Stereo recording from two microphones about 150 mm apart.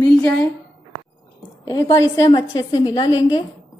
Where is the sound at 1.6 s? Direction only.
25° left (ahead or behind).